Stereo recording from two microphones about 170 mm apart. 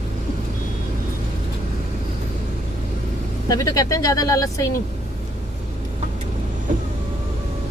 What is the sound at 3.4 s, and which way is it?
Speech, 20° left (ahead or behind).